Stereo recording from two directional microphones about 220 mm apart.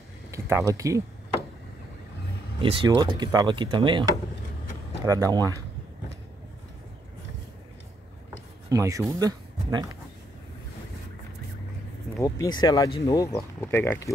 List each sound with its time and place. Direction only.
0.3 s speech: 10° right (ahead or behind)
2.6 s speech: 25° right (ahead or behind)
5.0 s speech: 15° right (ahead or behind)
8.6 s speech: 15° right (ahead or behind)
12.2 s speech: 15° left (ahead or behind)